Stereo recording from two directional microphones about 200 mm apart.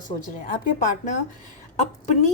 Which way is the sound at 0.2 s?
40° left (ahead or behind).